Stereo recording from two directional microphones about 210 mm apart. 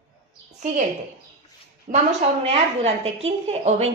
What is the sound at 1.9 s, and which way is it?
Speech, 35° right (ahead or behind).